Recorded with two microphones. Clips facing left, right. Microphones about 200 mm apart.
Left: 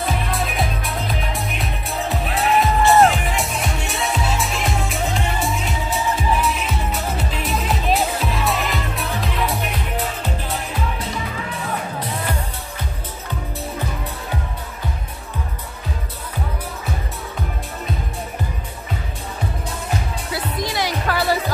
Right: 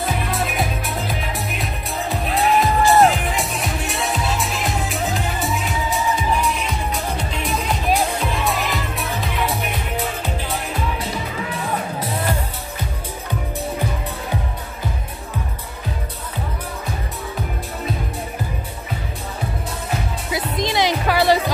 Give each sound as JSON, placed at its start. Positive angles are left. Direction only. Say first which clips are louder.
{"t": 0.0, "sound": "music", "louder": "even", "side_deg": 0}
{"t": 20.2, "sound": "music", "louder": "right 4 dB", "side_deg": -20}